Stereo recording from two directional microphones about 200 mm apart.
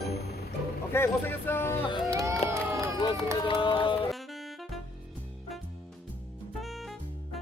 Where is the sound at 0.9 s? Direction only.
10° left (ahead or behind).